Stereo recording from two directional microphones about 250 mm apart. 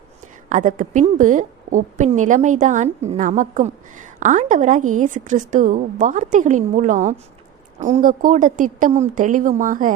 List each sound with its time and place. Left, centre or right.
0.4 s a woman's voice: right